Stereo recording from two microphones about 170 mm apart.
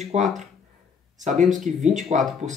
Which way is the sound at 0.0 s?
40° right (ahead or behind).